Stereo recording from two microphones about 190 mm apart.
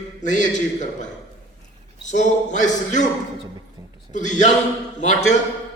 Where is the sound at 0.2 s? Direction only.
40° left (ahead or behind).